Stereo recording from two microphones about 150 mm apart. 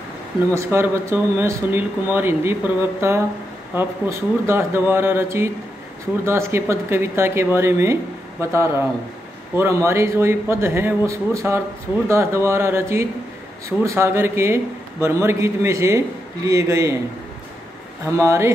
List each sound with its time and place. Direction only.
0.6 s a man's voice: 20° right (ahead or behind)
18.0 s a man's voice: 20° right (ahead or behind)